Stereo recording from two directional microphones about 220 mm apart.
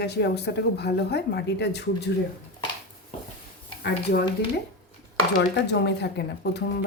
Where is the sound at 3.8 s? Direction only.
50° left (ahead or behind).